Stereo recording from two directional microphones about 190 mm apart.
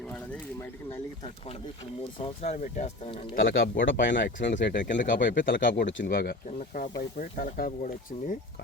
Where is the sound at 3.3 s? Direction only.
85° left.